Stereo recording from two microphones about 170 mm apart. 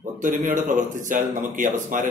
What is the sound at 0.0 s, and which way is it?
A man's voice, 50° right (ahead or behind).